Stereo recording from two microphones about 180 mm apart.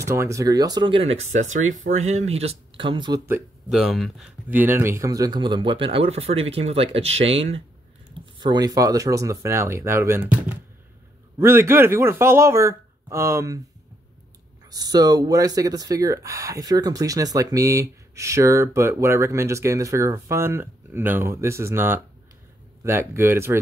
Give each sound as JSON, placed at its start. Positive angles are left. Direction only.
{"t": 0.0, "sound": "speech", "side_deg": -15}
{"t": 3.7, "sound": "speech", "side_deg": 0}
{"t": 14.7, "sound": "speech", "side_deg": -20}